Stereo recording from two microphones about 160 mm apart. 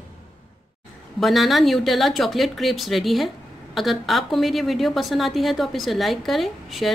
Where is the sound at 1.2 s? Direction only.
Centre (ahead or behind).